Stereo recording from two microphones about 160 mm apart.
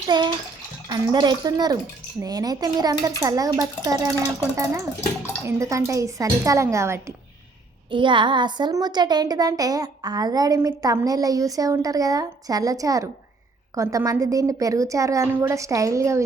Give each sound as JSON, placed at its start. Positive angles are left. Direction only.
{"t": 0.1, "sound": "speech", "side_deg": -30}
{"t": 7.9, "sound": "speech", "side_deg": -30}